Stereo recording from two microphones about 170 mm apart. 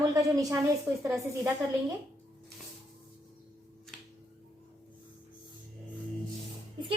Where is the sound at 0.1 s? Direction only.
20° right (ahead or behind).